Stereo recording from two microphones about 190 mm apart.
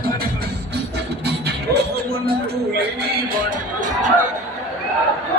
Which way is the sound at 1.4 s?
55° right (ahead or behind).